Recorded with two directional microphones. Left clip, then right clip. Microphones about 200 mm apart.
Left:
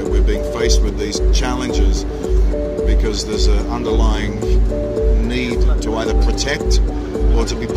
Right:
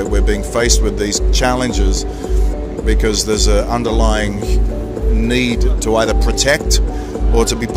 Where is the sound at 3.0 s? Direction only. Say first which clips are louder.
Right 4 dB; 55° right (ahead or behind).